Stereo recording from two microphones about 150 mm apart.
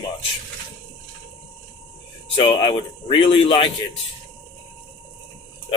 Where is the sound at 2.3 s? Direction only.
30° left (ahead or behind).